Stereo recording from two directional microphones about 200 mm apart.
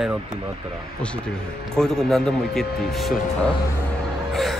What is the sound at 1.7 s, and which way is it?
Speech, 5° left (ahead or behind).